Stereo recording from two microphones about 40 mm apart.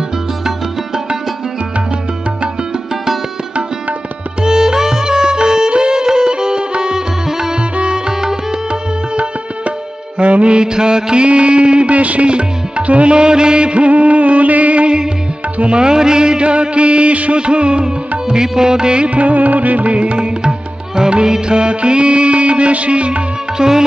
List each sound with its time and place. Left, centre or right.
4.4 s music: centre
7.7 s music: right
8.1 s music: centre
9.1 s music: right
15.8 s music: centre
19.0 s music: right
23.6 s music: centre